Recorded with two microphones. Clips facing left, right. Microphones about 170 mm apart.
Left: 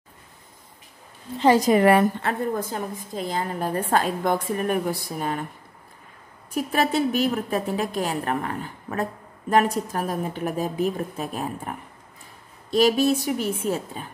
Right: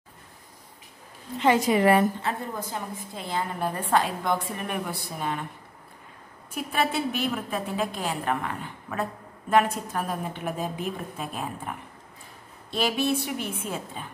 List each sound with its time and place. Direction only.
1.4 s a woman's voice: 35° left (ahead or behind)
1.9 s a woman's voice: 65° left (ahead or behind); by 5.5 s 45° left (ahead or behind)
6.5 s a woman's voice: 40° left (ahead or behind)
12.7 s a woman's voice: 40° left (ahead or behind)